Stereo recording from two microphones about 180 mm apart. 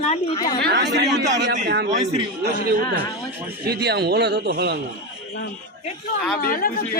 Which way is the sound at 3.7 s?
65° right (ahead or behind).